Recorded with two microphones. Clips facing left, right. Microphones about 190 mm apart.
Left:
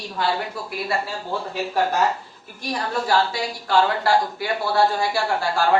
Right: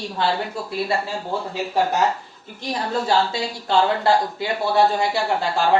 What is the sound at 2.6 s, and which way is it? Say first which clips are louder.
Speech: right 1 dB; 25° right (ahead or behind).